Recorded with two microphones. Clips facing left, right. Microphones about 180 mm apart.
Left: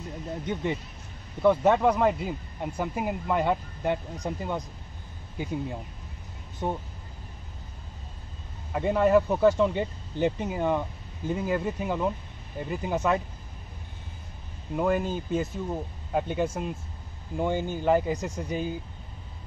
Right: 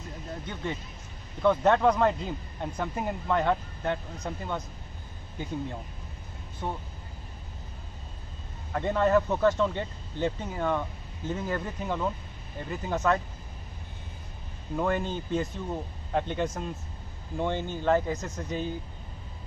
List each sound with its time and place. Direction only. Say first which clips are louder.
1.4 s speech: left 1 dB; 10° left (ahead or behind)
6.6 s speech: left 4 dB; 20° left (ahead or behind)
8.7 s speech: left 2 dB; 10° left (ahead or behind)
14.8 s speech: left 3 dB; 5° left (ahead or behind)